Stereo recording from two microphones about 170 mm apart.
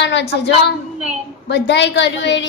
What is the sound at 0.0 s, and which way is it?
A woman's voice, 90° left.